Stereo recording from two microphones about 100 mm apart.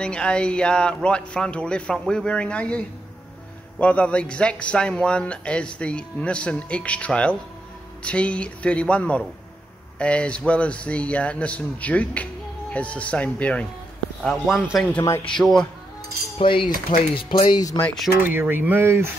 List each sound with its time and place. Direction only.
0.0 s speech: 10° left (ahead or behind)
3.8 s speech: 10° left (ahead or behind)
14.2 s speech: centre (ahead or behind)
16.3 s speech: 60° left (ahead or behind); by 17.7 s 40° left (ahead or behind)
18.2 s speech: 20° right (ahead or behind)